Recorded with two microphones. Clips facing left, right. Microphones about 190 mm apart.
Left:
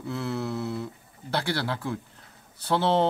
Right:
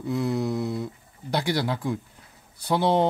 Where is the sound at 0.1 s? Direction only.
15° right (ahead or behind).